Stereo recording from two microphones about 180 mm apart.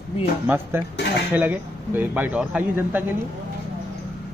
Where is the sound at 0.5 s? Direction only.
10° right (ahead or behind).